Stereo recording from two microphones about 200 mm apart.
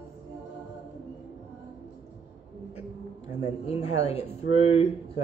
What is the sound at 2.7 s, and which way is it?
Speech, 30° left (ahead or behind).